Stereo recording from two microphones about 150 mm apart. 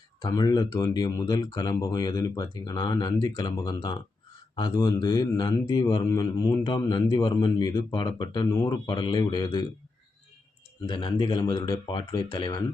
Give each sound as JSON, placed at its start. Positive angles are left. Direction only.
{"t": 0.2, "sound": "speech", "side_deg": 25}
{"t": 10.8, "sound": "speech", "side_deg": 30}